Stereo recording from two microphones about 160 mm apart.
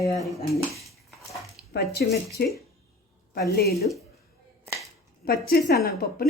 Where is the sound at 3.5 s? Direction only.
85° left.